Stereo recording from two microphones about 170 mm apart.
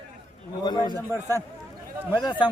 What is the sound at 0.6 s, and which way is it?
Speech, 25° left (ahead or behind).